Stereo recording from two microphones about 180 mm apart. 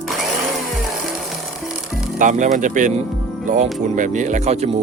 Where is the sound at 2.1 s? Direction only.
45° right (ahead or behind).